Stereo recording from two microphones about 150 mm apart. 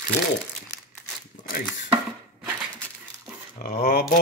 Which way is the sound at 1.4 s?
55° left (ahead or behind).